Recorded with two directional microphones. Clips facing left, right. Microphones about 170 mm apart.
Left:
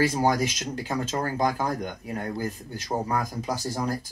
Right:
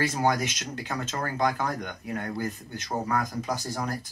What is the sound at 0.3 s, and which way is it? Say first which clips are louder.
Speech: left 3 dB; 35° left (ahead or behind).